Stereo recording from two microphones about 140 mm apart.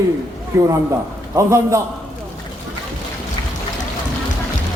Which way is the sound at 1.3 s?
20° right (ahead or behind).